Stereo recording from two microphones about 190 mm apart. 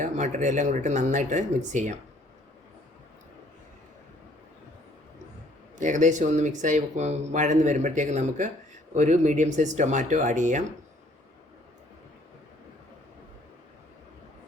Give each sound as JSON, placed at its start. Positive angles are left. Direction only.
{"t": 0.0, "sound": "speech", "side_deg": -40}
{"t": 5.7, "sound": "speech", "side_deg": -40}